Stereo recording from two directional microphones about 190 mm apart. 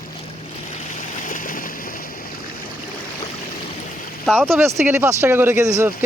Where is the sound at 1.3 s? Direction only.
45° left (ahead or behind).